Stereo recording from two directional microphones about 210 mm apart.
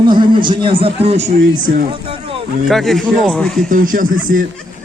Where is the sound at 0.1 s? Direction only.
20° right (ahead or behind).